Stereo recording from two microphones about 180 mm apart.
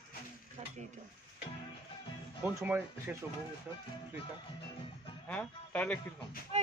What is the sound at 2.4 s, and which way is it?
Speech, 10° right (ahead or behind).